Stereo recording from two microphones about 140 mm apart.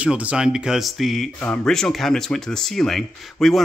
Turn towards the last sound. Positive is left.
turn(degrees=0)  # may be behind; listen again after turning